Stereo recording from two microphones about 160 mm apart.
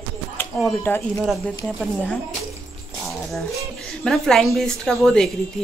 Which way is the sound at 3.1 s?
Centre (ahead or behind).